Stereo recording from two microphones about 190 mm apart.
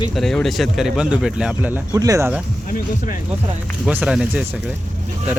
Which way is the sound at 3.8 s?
5° right (ahead or behind).